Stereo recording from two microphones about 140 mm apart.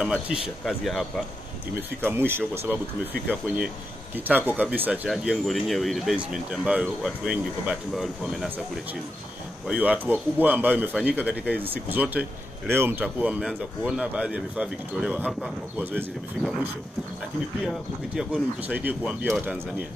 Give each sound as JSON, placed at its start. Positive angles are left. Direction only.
{"t": 0.0, "sound": "speech", "side_deg": -5}
{"t": 1.8, "sound": "speech", "side_deg": -15}
{"t": 9.7, "sound": "speech", "side_deg": -10}